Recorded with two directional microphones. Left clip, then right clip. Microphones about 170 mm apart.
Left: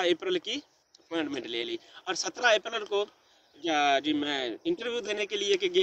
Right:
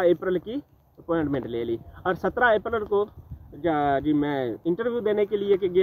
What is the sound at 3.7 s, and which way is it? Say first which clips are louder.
Speech: right 2 dB; 45° left (ahead or behind).